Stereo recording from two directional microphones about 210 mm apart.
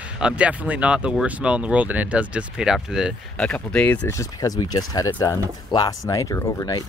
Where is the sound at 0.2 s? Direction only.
5° right (ahead or behind).